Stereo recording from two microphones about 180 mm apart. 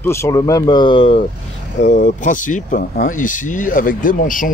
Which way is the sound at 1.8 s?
45° left (ahead or behind).